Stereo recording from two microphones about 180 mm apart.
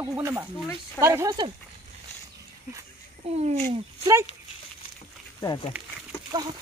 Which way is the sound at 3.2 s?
35° right (ahead or behind).